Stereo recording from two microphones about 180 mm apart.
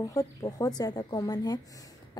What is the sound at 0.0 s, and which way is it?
A woman's voice, 20° left (ahead or behind).